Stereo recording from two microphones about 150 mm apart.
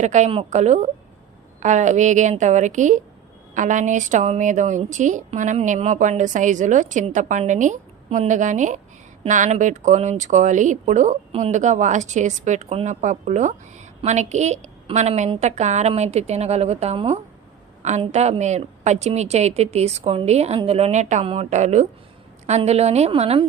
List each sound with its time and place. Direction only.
0.0 s a woman's voice: 50° right (ahead or behind)